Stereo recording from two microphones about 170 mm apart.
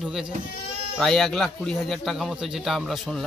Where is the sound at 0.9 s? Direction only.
Centre (ahead or behind).